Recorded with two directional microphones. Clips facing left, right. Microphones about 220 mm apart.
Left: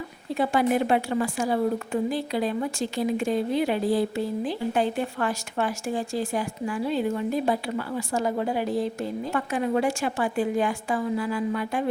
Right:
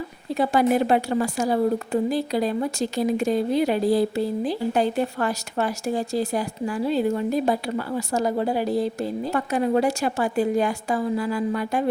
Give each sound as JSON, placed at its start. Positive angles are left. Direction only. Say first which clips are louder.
{"t": 0.3, "sound": "speech", "louder": "right 3 dB", "side_deg": -40}